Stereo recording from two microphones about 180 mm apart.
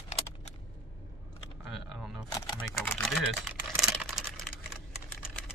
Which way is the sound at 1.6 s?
Centre (ahead or behind).